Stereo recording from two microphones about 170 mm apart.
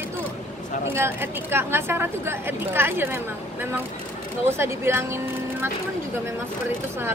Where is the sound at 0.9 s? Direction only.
15° right (ahead or behind).